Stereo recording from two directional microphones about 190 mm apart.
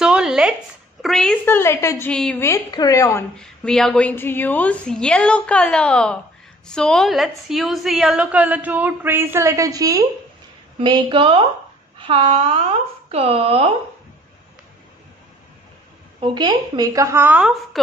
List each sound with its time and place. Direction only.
0.0 s a sound: 5° right (ahead or behind)
1.0 s a woman's voice: centre (ahead or behind)
2.5 s a woman's voice: 20° left (ahead or behind)
3.3 s a woman's voice: 5° left (ahead or behind); by 13.7 s 30° right (ahead or behind)
16.2 s a woman's voice: 20° right (ahead or behind)